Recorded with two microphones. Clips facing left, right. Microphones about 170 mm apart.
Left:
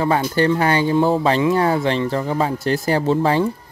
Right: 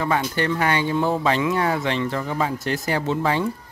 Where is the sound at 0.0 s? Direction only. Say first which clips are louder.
Left 5 dB; 35° left (ahead or behind).